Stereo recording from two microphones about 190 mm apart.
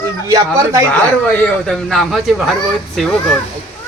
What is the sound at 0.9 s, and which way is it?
Speech, 5° left (ahead or behind).